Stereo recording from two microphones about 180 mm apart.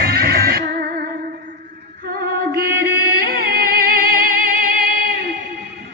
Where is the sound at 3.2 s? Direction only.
55° right (ahead or behind).